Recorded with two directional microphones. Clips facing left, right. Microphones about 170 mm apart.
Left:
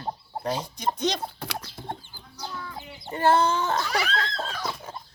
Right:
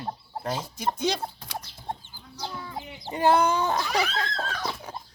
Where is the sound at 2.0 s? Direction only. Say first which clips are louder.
Right 2 dB; 20° right (ahead or behind).